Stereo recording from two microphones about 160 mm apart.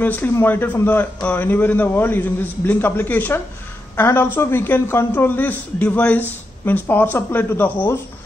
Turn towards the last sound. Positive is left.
turn(degrees=15)  # may be behind; listen again after turning